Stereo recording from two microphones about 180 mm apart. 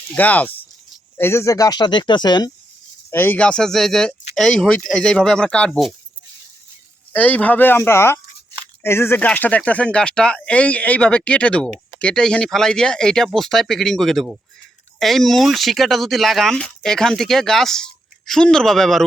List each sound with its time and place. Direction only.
0.1 s speech: 10° left (ahead or behind)
3.1 s speech: 10° left (ahead or behind)
7.1 s speech: 10° left (ahead or behind)